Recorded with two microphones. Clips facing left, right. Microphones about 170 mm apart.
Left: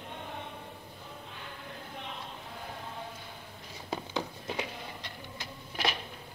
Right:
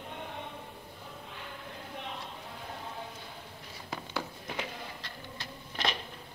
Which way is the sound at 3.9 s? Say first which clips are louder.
Left 3 dB; 20° left (ahead or behind).